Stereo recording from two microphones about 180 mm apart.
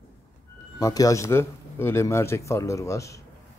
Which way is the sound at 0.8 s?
20° left (ahead or behind).